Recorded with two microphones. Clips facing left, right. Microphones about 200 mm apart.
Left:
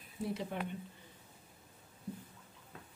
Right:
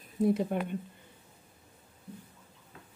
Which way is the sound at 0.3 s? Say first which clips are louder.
Right 10 dB; 50° right (ahead or behind).